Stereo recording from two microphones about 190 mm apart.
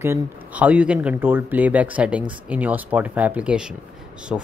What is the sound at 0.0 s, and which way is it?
Speech, 10° right (ahead or behind).